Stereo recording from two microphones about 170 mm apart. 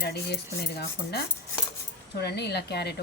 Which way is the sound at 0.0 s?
75° left (ahead or behind).